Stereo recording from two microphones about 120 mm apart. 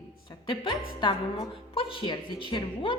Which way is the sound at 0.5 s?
45° left (ahead or behind).